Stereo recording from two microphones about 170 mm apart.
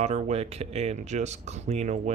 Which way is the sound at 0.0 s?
40° right (ahead or behind).